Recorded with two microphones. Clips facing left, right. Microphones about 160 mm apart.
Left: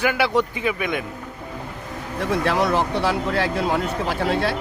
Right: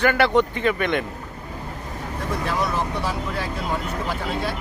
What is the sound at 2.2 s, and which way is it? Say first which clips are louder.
Speech: left 5 dB; 75° left (ahead or behind).